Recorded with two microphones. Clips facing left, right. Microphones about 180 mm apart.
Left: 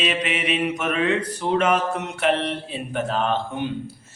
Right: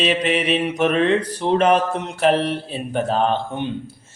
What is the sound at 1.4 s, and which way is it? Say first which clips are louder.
Speech: right 4 dB; 35° right (ahead or behind).